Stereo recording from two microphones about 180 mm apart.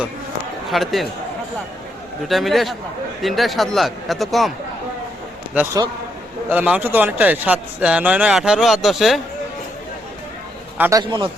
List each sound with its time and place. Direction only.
0.7 s a man's voice: centre (ahead or behind)
2.2 s a man's voice: centre (ahead or behind)
6.5 s a man's voice: 10° right (ahead or behind)
10.8 s a man's voice: 15° right (ahead or behind)
11.0 s speech: 25° right (ahead or behind)